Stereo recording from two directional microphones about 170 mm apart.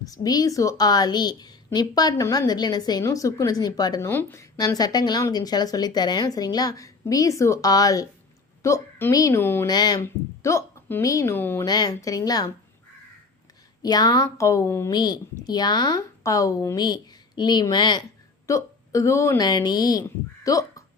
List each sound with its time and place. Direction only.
0.0 s a woman's voice: 20° left (ahead or behind)
13.8 s a woman's voice: 20° left (ahead or behind)